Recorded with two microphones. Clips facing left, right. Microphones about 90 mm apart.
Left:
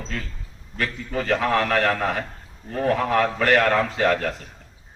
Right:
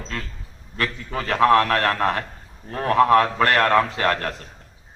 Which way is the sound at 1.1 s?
65° right (ahead or behind).